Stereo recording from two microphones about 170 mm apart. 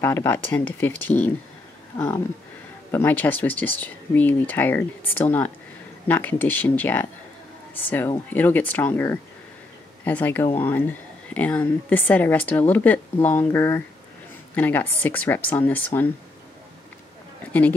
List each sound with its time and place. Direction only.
0.0 s speech: 15° left (ahead or behind)
17.5 s speech: 10° left (ahead or behind)